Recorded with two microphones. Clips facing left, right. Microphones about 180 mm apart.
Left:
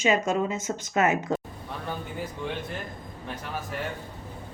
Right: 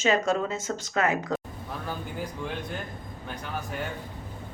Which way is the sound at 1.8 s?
Centre (ahead or behind).